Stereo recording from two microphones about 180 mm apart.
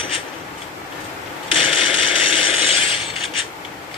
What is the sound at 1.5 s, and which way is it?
Mechanisms, 30° left (ahead or behind).